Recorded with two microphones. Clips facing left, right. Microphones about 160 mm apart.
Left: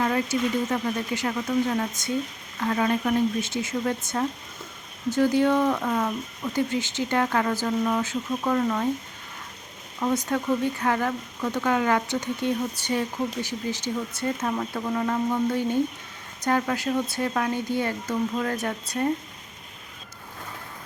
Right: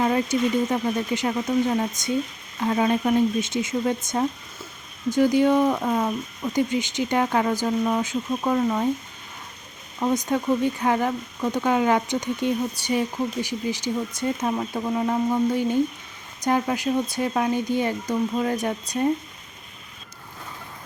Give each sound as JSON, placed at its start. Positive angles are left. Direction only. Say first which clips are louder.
{"t": 0.0, "sound": "speech", "louder": "right 3 dB", "side_deg": -20}
{"t": 10.0, "sound": "speech", "louder": "right 2 dB", "side_deg": -15}